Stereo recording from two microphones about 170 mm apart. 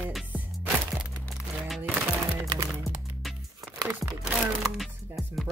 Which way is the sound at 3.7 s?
20° right (ahead or behind).